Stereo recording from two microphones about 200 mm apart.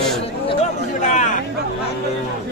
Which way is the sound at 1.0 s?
35° left (ahead or behind).